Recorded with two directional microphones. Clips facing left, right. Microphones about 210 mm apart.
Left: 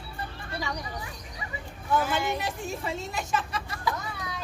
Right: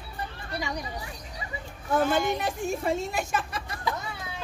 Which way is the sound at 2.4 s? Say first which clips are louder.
Right 4 dB; 50° right (ahead or behind).